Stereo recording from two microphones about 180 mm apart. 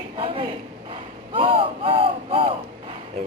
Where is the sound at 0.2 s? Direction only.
30° right (ahead or behind).